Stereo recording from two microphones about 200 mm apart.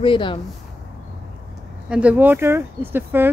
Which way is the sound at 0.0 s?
25° left (ahead or behind).